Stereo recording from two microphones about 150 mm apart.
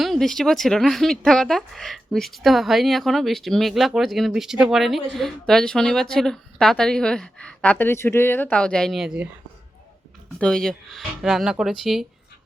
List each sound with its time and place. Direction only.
0.0 s a woman's voice: centre (ahead or behind)
10.3 s a woman's voice: 5° left (ahead or behind)